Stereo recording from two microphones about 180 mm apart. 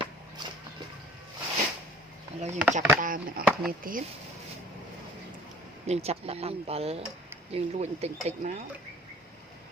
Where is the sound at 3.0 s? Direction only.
50° right (ahead or behind).